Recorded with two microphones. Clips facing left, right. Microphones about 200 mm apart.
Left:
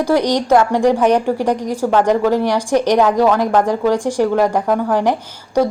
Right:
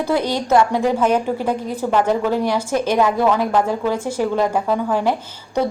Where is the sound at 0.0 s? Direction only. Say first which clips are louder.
Left 4 dB; 15° left (ahead or behind).